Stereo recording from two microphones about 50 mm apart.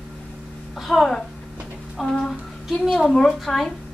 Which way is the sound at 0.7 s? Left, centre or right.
Centre.